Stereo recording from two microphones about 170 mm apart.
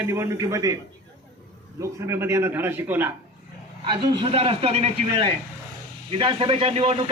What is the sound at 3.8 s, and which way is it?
A man's voice, 30° right (ahead or behind).